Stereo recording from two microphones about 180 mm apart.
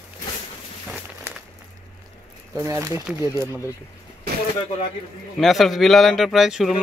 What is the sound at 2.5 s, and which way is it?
Speech, 15° right (ahead or behind).